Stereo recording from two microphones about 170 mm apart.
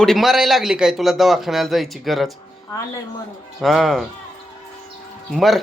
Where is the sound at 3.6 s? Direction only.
Centre (ahead or behind).